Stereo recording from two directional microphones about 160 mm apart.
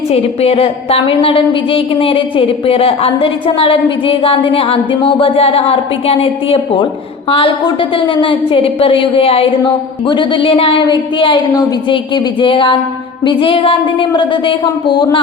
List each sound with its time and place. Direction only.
0.1 s a woman's voice: 40° left (ahead or behind)